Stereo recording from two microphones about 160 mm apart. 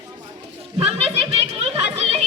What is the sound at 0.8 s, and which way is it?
Children playing, 40° right (ahead or behind).